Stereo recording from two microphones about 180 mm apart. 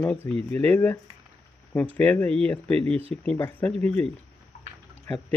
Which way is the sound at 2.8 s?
35° right (ahead or behind).